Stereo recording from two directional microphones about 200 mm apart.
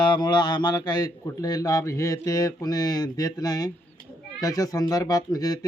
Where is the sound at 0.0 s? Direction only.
20° left (ahead or behind).